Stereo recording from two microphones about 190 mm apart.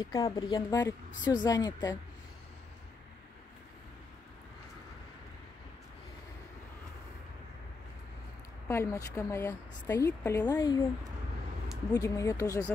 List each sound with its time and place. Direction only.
0.0 s speech: 20° left (ahead or behind)
8.6 s a woman's voice: 15° left (ahead or behind)
11.9 s a woman's voice: 15° left (ahead or behind)